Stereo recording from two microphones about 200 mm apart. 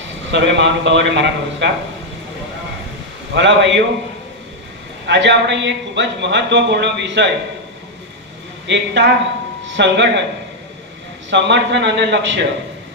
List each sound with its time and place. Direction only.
0.3 s speech: 60° right (ahead or behind)
3.3 s speech: 65° right (ahead or behind)
5.0 s speech: 60° right (ahead or behind)
8.6 s speech: 60° right (ahead or behind)
11.3 s speech: 60° right (ahead or behind)